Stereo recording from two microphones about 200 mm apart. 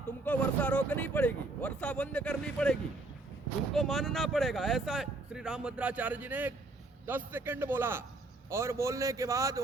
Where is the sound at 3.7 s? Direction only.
Centre (ahead or behind).